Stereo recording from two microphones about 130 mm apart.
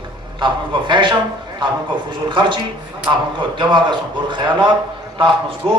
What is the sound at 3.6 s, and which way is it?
A man's voice, 35° right (ahead or behind).